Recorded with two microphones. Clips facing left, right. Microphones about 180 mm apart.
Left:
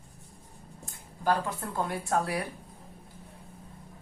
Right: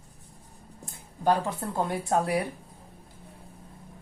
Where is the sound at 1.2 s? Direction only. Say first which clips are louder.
Right 3 dB; 25° right (ahead or behind).